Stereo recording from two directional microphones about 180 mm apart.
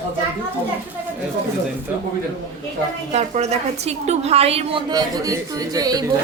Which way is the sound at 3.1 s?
40° right (ahead or behind).